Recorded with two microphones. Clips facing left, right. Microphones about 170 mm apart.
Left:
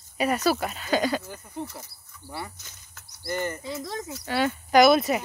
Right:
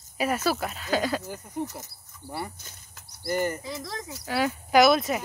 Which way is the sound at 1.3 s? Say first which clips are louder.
Right 3 dB; 15° right (ahead or behind).